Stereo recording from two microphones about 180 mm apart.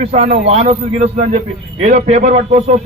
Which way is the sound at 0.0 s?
35° right (ahead or behind).